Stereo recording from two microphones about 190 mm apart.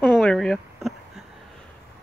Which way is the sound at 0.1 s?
Centre (ahead or behind).